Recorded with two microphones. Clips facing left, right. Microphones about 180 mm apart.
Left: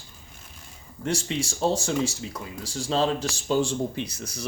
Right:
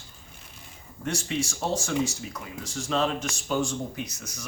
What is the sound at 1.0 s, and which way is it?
Speech, 30° left (ahead or behind).